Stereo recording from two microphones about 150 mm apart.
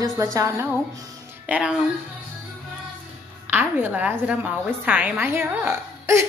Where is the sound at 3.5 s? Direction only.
15° right (ahead or behind).